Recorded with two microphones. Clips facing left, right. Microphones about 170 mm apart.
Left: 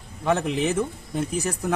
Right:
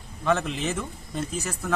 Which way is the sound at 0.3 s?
15° left (ahead or behind).